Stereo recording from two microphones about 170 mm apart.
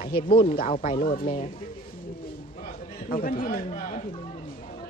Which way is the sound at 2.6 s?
55° left (ahead or behind).